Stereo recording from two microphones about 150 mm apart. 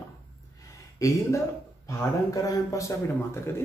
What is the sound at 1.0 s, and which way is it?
A man's voice, 20° left (ahead or behind).